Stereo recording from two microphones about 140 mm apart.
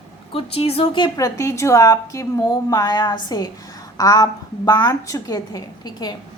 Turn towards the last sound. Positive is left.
turn(degrees=25)  # may be behind; listen again after turning